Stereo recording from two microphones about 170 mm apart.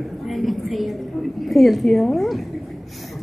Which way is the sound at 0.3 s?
Centre (ahead or behind).